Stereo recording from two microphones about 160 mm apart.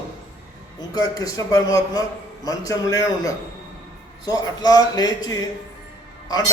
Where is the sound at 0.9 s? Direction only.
20° left (ahead or behind).